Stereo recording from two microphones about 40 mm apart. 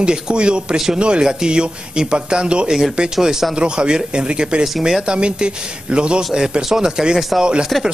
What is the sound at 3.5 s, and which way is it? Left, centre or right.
Speech, right.